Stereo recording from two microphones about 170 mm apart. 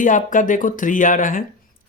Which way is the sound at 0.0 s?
50° left (ahead or behind).